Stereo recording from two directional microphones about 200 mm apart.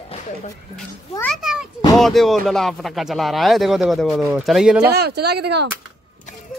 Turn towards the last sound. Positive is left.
turn(degrees=-55)  # may be behind; listen again after turning